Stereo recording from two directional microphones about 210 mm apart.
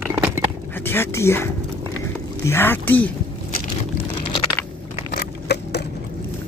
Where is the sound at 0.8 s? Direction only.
10° left (ahead or behind).